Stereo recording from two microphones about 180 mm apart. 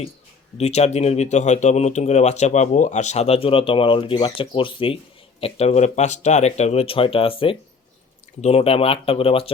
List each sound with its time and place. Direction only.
0.5 s speech: 35° left (ahead or behind)